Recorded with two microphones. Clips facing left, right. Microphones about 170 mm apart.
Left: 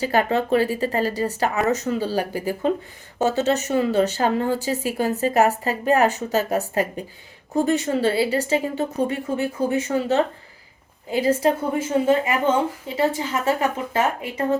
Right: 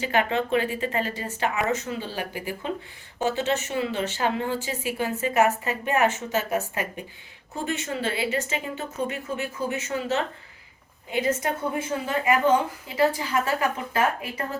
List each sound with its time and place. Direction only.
0.0 s a woman's voice: 40° left (ahead or behind)